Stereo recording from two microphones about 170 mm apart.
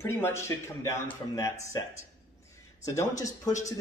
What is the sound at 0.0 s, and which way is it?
A man's voice, 15° left (ahead or behind).